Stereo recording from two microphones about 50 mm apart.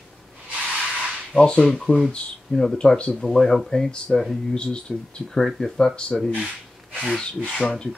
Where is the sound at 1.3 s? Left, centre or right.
Left.